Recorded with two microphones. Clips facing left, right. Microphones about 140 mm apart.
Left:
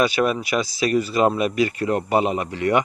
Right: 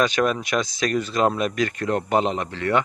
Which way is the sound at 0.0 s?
5° left (ahead or behind).